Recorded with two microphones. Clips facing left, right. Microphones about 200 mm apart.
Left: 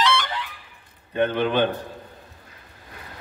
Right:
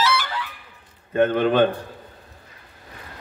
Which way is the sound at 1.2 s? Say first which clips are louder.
Right 3 dB; 45° right (ahead or behind).